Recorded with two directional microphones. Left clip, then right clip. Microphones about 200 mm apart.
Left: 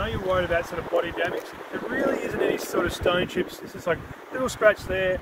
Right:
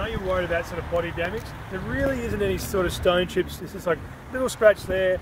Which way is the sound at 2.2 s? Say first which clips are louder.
Left 1 dB; 40° right (ahead or behind).